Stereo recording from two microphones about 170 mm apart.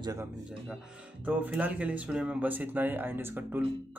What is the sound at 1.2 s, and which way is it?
A man's voice, 10° right (ahead or behind).